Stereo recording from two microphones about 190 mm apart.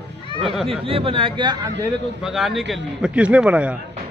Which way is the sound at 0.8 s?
30° right (ahead or behind).